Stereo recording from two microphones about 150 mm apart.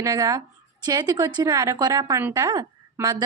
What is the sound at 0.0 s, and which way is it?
A woman's voice, 25° right (ahead or behind).